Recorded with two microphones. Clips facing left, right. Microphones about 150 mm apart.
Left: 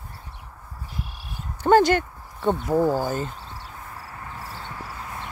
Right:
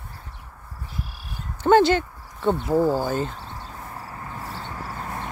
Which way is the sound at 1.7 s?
45° left (ahead or behind).